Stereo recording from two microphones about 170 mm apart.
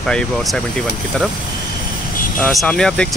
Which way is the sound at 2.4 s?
5° left (ahead or behind).